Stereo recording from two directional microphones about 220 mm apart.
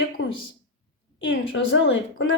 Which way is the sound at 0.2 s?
70° left (ahead or behind).